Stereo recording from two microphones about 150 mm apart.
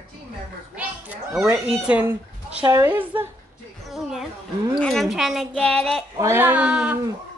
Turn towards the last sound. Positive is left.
turn(degrees=-5)  # may be behind; listen again after turning